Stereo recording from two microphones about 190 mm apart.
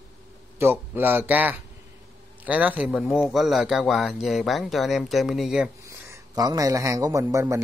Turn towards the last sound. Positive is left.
turn(degrees=-15)  # may be behind; listen again after turning